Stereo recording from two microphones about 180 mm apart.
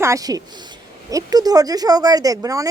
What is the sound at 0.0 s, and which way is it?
A woman's voice, 20° right (ahead or behind).